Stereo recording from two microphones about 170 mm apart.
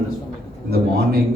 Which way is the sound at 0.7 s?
65° right (ahead or behind).